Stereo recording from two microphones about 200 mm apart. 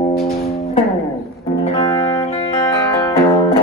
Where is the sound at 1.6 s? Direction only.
30° left (ahead or behind).